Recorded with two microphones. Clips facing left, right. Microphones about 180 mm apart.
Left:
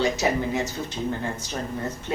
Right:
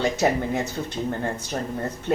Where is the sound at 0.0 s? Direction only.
55° right (ahead or behind).